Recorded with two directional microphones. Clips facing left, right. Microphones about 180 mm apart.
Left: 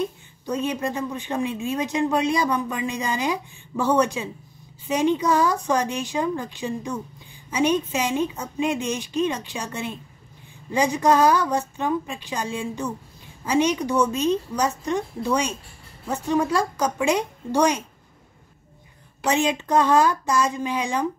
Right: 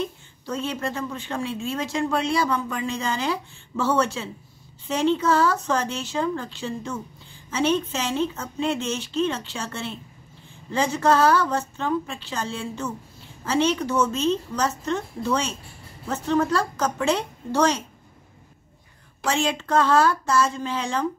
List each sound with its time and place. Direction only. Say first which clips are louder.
0.0 s speech: left 2 dB; 15° left (ahead or behind)
19.2 s speech: left 2 dB; 20° left (ahead or behind)